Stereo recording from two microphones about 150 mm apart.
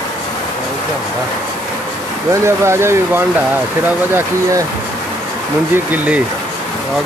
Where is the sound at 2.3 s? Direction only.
20° right (ahead or behind).